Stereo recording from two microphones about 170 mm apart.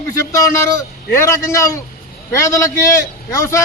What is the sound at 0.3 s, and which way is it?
A man's voice, 15° left (ahead or behind).